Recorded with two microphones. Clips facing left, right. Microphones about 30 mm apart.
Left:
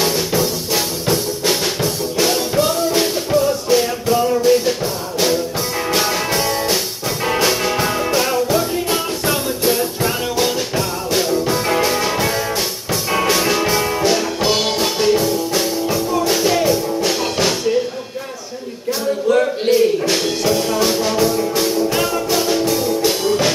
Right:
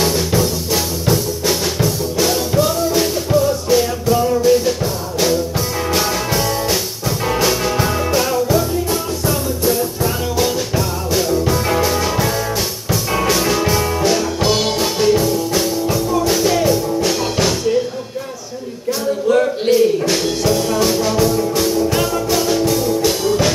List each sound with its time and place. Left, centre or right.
0.0 s music: centre
5.9 s music: centre
8.9 s music: left
10.3 s music: centre
19.2 s music: centre